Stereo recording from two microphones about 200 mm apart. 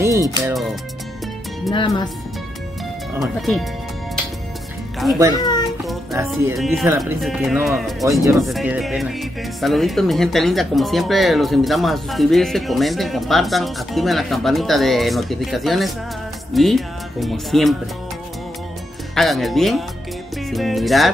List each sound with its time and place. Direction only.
0.0 s music: 15° right (ahead or behind)
1.7 s speech: 20° left (ahead or behind)
3.3 s speech: centre (ahead or behind)
5.3 s a child's voice: 20° left (ahead or behind)
6.5 s speech: centre (ahead or behind)
8.0 s speech: 15° right (ahead or behind)
8.5 s speech: centre (ahead or behind)
19.1 s speech: centre (ahead or behind)